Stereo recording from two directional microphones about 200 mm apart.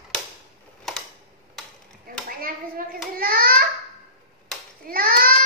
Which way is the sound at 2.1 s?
45° right (ahead or behind).